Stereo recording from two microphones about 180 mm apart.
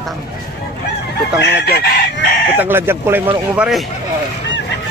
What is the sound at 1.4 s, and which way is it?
Chicken, 65° left (ahead or behind).